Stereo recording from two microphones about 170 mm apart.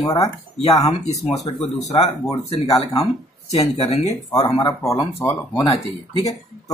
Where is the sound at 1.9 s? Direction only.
20° left (ahead or behind).